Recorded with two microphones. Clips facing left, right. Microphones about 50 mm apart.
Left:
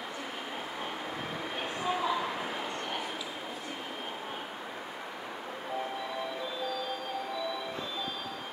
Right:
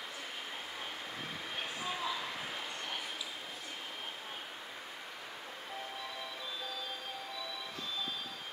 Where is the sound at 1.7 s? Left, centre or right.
Left.